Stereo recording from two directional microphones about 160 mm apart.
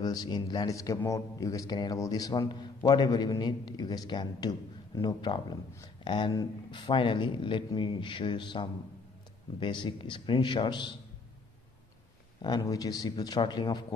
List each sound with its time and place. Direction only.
0.0 s a man's voice: 25° left (ahead or behind)
12.4 s a man's voice: 25° left (ahead or behind)